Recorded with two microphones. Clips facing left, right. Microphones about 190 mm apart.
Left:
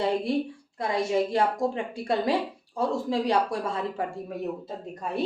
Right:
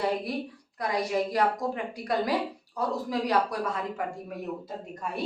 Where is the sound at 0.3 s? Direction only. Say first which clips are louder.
Left 6 dB; 25° left (ahead or behind).